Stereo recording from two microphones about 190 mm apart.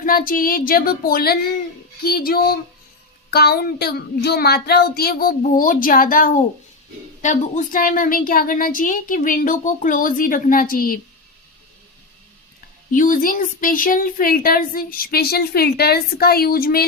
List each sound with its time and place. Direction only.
0.0 s speech: 50° left (ahead or behind)
12.9 s speech: 45° left (ahead or behind)